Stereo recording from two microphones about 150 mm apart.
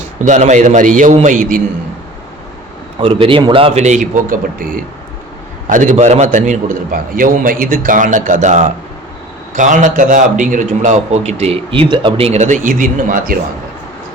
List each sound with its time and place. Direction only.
0.2 s a man's voice: 55° right (ahead or behind)
3.0 s speech: 35° right (ahead or behind)
3.8 s a man's voice: 55° right (ahead or behind); by 4.7 s 70° right (ahead or behind)
5.6 s a man's voice: 60° right (ahead or behind)